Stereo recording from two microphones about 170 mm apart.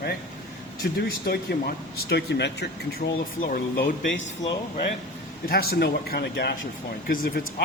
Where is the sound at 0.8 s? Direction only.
70° left (ahead or behind).